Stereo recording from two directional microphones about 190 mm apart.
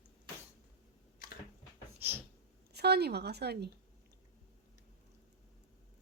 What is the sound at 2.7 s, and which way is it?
Speech, 60° right (ahead or behind).